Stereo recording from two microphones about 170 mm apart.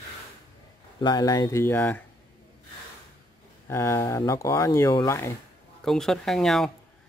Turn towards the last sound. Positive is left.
turn(degrees=0)  # may be behind; listen again after turning